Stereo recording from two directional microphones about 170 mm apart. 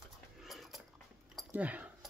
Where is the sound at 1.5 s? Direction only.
10° right (ahead or behind).